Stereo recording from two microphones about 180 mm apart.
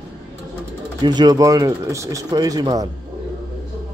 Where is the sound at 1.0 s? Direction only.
25° right (ahead or behind).